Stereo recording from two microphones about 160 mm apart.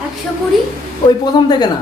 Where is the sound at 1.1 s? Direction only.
25° left (ahead or behind).